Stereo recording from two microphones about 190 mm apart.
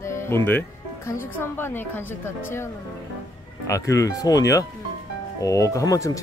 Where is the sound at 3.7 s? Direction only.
15° left (ahead or behind).